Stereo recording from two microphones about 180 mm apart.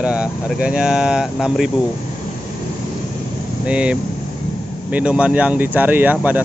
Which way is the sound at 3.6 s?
5° right (ahead or behind).